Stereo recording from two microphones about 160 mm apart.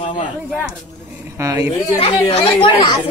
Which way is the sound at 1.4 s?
20° right (ahead or behind).